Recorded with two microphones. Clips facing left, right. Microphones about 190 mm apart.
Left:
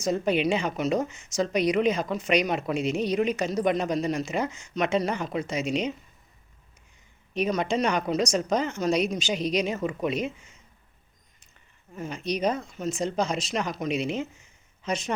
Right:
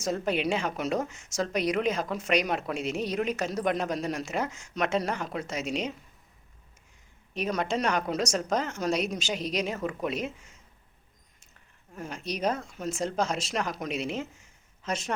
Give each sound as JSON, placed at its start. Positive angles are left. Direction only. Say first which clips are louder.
{"t": 0.0, "sound": "a woman's voice", "louder": "left 4 dB", "side_deg": 0}
{"t": 7.3, "sound": "a woman's voice", "louder": "left 4 dB", "side_deg": 0}
{"t": 11.9, "sound": "a woman's voice", "louder": "left 4 dB", "side_deg": 0}